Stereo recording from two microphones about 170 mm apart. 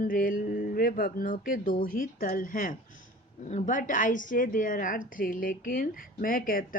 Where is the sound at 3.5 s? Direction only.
50° left (ahead or behind).